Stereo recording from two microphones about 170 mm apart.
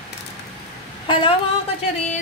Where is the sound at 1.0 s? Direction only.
30° left (ahead or behind).